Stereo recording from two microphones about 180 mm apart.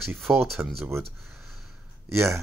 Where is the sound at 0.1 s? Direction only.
Centre (ahead or behind).